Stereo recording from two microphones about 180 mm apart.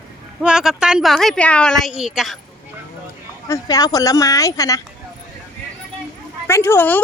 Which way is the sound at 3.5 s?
20° left (ahead or behind).